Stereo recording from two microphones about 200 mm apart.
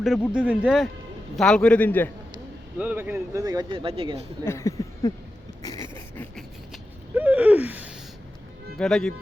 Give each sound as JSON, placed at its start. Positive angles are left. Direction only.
{"t": 0.3, "sound": "a man's voice", "side_deg": -5}
{"t": 2.7, "sound": "speech", "side_deg": -10}
{"t": 4.4, "sound": "a sound", "side_deg": 15}
{"t": 7.1, "sound": "gasp", "side_deg": -10}
{"t": 8.8, "sound": "a man's voice", "side_deg": 5}